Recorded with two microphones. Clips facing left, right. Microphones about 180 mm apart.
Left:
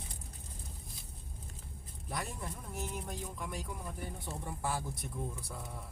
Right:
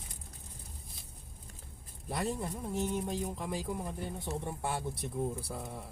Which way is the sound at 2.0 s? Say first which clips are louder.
Right 6 dB; 30° right (ahead or behind).